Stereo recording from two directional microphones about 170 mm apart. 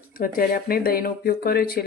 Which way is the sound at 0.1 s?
55° left (ahead or behind).